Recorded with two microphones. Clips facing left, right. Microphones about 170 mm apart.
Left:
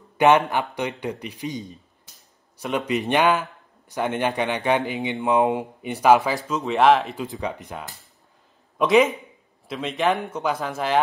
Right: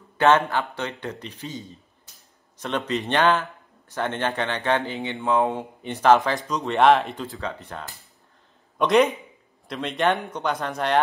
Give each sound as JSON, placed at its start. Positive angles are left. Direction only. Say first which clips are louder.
{"t": 0.2, "sound": "speech", "louder": "left 2 dB", "side_deg": 15}
{"t": 7.2, "sound": "speech", "louder": "left 3 dB", "side_deg": 15}
{"t": 8.7, "sound": "a man's voice", "louder": "left 1 dB", "side_deg": 0}